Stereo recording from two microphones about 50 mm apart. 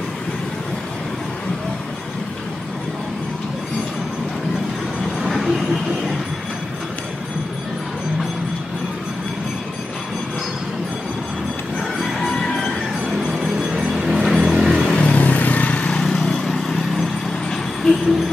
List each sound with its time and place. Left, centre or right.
5.2 s vehicle: centre
12.3 s music: centre
13.2 s vehicle: centre
15.0 s vehicle: left
16.0 s vehicle: centre